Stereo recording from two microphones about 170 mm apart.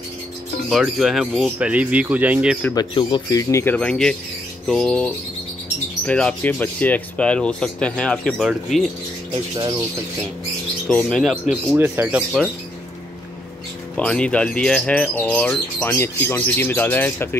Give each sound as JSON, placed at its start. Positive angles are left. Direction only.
{"t": 0.7, "sound": "speech", "side_deg": 0}
{"t": 2.7, "sound": "speech", "side_deg": 25}
{"t": 9.3, "sound": "speech", "side_deg": -30}
{"t": 10.9, "sound": "speech", "side_deg": 5}
{"t": 11.7, "sound": "speech", "side_deg": -15}
{"t": 13.9, "sound": "speech", "side_deg": 5}